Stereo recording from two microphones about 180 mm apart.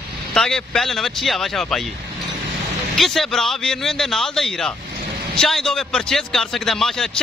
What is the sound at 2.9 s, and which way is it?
A man's voice, centre (ahead or behind).